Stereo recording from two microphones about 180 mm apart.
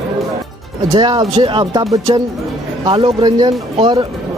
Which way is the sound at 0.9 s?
25° right (ahead or behind).